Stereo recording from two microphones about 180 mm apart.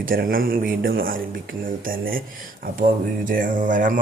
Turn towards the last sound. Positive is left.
turn(degrees=-45)  # may be behind; listen again after turning